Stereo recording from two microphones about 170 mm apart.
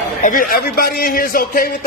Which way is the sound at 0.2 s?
55° left (ahead or behind).